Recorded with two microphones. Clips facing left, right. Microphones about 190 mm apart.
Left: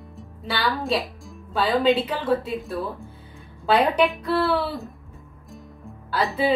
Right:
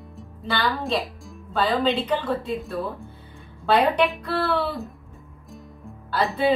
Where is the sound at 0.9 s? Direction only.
5° left (ahead or behind).